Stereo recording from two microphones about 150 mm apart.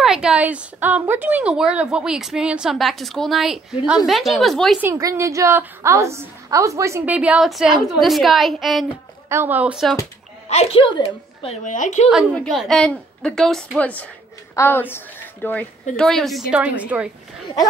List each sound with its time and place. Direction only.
0.0 s a woman's voice: 5° right (ahead or behind)
4.8 s a woman's voice: 20° right (ahead or behind)
7.2 s a woman's voice: 5° right (ahead or behind)
9.3 s speech: 15° right (ahead or behind)
10.5 s a woman's voice: 40° left (ahead or behind)
11.4 s a woman's voice: 50° left (ahead or behind)
12.4 s a woman's voice: centre (ahead or behind)